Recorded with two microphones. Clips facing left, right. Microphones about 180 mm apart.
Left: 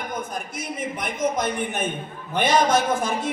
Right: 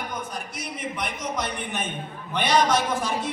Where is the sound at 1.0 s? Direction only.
50° left (ahead or behind).